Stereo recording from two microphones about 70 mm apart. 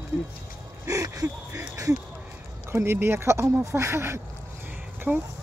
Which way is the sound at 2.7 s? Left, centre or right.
Right.